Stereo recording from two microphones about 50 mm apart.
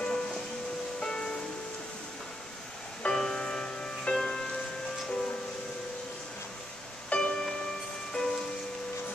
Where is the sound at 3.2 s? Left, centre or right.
Centre.